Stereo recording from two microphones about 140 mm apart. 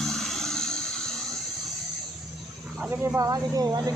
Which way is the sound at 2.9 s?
15° right (ahead or behind).